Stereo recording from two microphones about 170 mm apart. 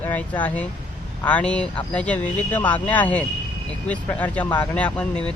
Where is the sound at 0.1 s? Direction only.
10° left (ahead or behind).